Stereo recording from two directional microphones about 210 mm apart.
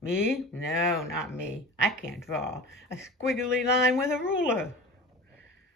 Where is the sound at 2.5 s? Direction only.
10° left (ahead or behind).